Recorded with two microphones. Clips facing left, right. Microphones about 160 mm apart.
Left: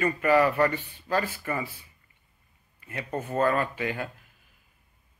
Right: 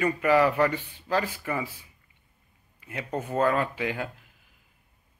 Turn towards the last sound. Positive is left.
turn(degrees=-10)  # may be behind; listen again after turning